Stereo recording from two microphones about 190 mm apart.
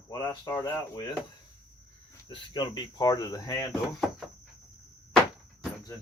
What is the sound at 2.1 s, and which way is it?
Speech, 20° left (ahead or behind).